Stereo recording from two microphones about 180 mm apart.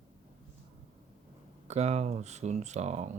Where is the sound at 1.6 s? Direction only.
40° right (ahead or behind).